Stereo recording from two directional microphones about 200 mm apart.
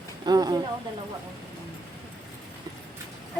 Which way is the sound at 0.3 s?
20° right (ahead or behind).